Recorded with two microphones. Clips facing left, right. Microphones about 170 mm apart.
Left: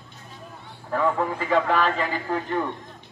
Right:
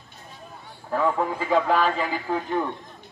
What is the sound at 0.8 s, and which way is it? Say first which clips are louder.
A man's voice: even; 10° right (ahead or behind).